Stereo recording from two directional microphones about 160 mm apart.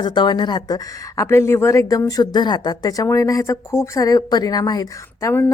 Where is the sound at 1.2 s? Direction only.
15° left (ahead or behind).